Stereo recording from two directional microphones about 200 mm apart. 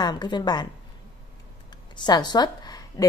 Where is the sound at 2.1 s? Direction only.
20° left (ahead or behind).